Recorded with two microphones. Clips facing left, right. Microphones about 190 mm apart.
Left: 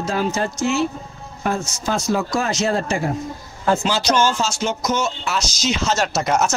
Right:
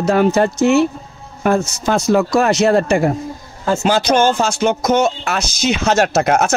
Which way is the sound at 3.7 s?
50° right (ahead or behind).